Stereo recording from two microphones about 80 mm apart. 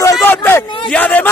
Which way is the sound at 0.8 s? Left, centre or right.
Centre.